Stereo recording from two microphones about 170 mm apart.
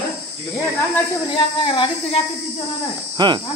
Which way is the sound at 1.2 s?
30° left (ahead or behind).